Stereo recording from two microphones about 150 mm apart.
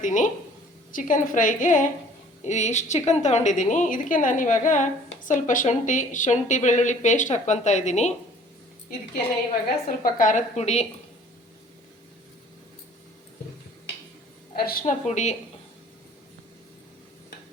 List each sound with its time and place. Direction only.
0.0 s a woman's voice: 55° left (ahead or behind)
9.6 s a woman's voice: 70° left (ahead or behind); by 10.8 s 45° left (ahead or behind)
14.5 s a woman's voice: 85° left
14.8 s a woman's voice: 50° left (ahead or behind)